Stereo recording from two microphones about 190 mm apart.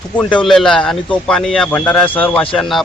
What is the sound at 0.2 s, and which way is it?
Speech, 5° left (ahead or behind).